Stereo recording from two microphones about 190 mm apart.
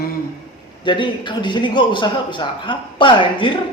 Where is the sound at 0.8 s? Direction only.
25° left (ahead or behind).